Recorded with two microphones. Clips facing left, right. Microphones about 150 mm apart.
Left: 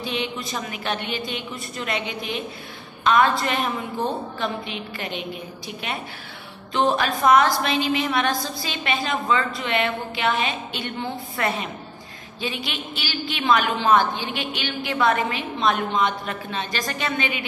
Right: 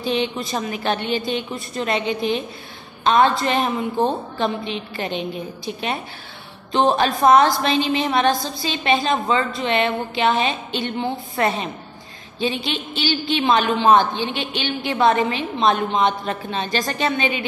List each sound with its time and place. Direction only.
0.0 s a woman's voice: 30° right (ahead or behind)